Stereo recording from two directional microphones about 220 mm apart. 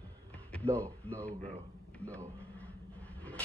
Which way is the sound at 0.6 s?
10° right (ahead or behind).